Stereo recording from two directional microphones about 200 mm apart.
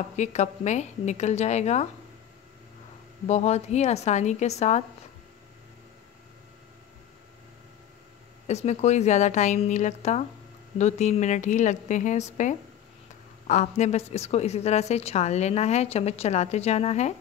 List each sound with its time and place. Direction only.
0.1 s a woman's voice: 35° left (ahead or behind)
3.3 s a woman's voice: 35° left (ahead or behind)
8.5 s a woman's voice: 35° left (ahead or behind)